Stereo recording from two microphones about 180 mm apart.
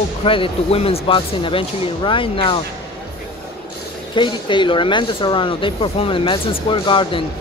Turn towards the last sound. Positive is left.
turn(degrees=30)  # may be behind; listen again after turning